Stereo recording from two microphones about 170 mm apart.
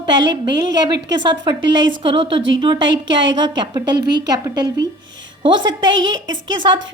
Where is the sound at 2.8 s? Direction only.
90° right.